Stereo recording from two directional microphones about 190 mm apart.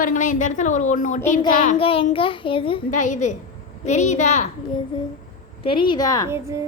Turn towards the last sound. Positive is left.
turn(degrees=-15)  # may be behind; listen again after turning